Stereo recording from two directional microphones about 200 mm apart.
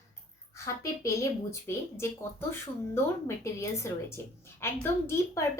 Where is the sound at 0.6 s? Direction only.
15° left (ahead or behind).